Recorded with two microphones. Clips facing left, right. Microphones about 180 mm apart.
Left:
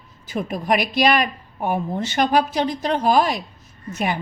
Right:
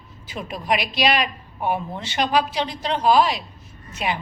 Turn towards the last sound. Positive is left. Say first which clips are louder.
# left 3 dB
turn(degrees=45)  # may be behind; listen again after turning